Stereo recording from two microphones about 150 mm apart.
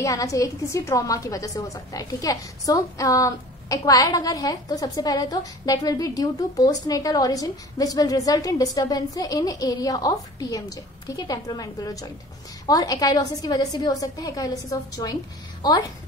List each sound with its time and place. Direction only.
0.0 s a woman's voice: 20° left (ahead or behind)